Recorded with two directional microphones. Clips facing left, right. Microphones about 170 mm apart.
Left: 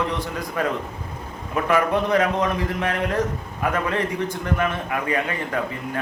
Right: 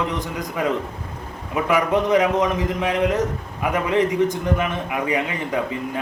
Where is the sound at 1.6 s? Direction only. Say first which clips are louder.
Right 1 dB; 15° right (ahead or behind).